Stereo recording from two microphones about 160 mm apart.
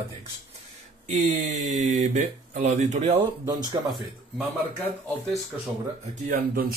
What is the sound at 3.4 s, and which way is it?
Speech, 25° right (ahead or behind).